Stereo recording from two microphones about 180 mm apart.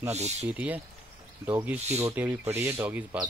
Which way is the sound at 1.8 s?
35° right (ahead or behind).